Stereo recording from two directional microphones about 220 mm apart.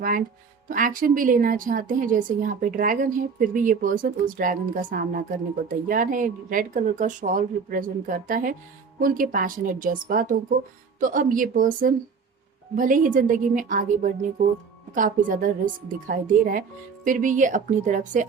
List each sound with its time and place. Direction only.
0.0 s a woman's voice: 40° right (ahead or behind)